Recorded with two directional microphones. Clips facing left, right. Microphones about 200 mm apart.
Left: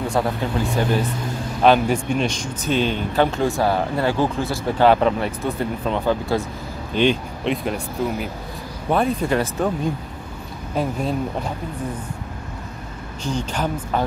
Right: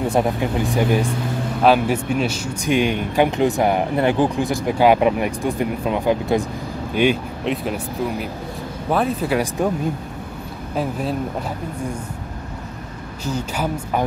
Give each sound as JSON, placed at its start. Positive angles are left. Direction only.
{"t": 0.0, "sound": "speech", "side_deg": -20}
{"t": 7.0, "sound": "speech", "side_deg": -5}
{"t": 10.8, "sound": "speech", "side_deg": -5}
{"t": 13.2, "sound": "speech", "side_deg": -5}